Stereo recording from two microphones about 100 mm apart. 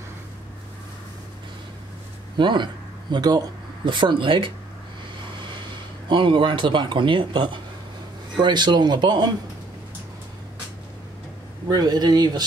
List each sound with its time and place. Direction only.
2.3 s speech: 50° right (ahead or behind)
11.7 s speech: 45° right (ahead or behind)